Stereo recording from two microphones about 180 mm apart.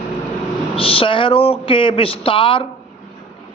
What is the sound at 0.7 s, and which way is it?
Speech, 30° left (ahead or behind).